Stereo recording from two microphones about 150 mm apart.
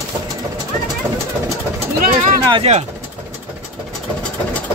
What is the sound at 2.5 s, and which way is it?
Speech, 40° right (ahead or behind).